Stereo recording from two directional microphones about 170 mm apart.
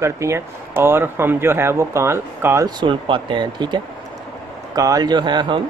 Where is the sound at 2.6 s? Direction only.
30° right (ahead or behind).